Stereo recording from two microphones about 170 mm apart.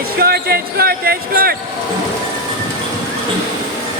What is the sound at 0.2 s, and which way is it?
Basketball bounce, 60° right (ahead or behind).